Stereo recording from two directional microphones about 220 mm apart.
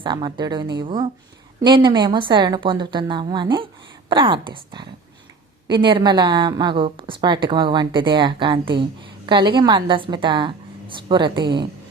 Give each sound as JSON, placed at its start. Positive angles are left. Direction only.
{"t": 0.0, "sound": "a woman's voice", "side_deg": -20}